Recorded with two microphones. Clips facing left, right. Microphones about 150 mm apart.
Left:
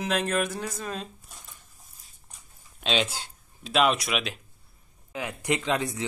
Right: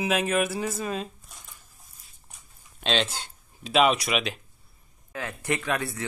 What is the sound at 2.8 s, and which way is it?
Speech, 5° left (ahead or behind).